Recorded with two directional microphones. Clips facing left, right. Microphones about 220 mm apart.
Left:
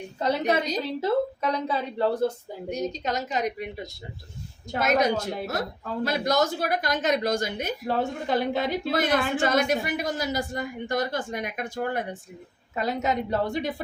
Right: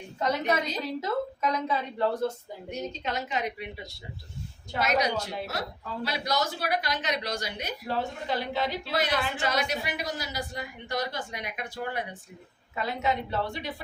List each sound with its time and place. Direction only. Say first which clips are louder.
0.2 s a woman's voice: left 3 dB; 30° left (ahead or behind)
4.7 s speech: left 4 dB; 50° left (ahead or behind)